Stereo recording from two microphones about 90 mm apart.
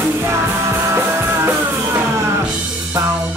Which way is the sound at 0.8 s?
30° right (ahead or behind).